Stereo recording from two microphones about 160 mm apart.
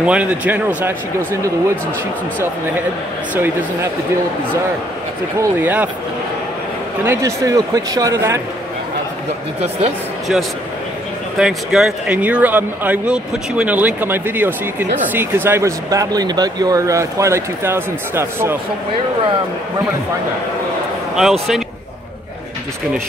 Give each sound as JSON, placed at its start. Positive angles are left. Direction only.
{"t": 0.0, "sound": "speech", "side_deg": -10}
{"t": 3.3, "sound": "speech", "side_deg": -15}
{"t": 5.4, "sound": "speech", "side_deg": -10}
{"t": 7.1, "sound": "speech", "side_deg": -20}
{"t": 9.6, "sound": "speech", "side_deg": -40}
{"t": 11.3, "sound": "speech", "side_deg": 0}
{"t": 21.2, "sound": "speech", "side_deg": 0}